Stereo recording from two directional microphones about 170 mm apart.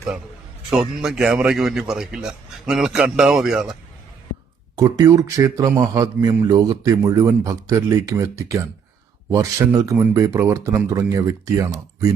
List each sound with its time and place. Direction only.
0.7 s a man's voice: 5° right (ahead or behind)
4.8 s a man's voice: 20° right (ahead or behind)